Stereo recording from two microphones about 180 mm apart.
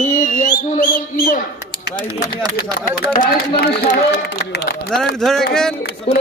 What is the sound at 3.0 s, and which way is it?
Speech, 60° left (ahead or behind).